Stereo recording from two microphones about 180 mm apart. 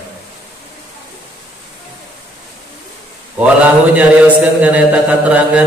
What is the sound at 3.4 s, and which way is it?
A man's voice, 5° right (ahead or behind).